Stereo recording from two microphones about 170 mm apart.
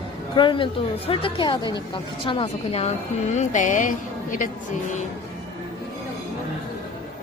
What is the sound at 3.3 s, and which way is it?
Speech, 45° left (ahead or behind).